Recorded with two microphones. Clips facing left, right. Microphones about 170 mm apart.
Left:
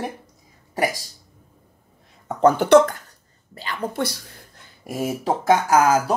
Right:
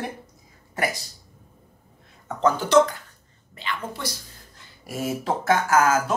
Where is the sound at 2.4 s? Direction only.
55° left (ahead or behind).